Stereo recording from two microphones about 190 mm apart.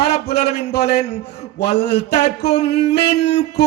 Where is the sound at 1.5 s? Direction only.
60° left (ahead or behind).